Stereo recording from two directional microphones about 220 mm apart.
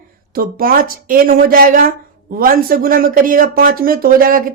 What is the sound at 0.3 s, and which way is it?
Speech, 40° right (ahead or behind).